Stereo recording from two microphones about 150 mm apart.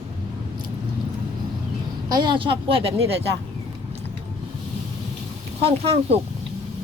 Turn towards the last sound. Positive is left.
turn(degrees=-40)  # may be behind; listen again after turning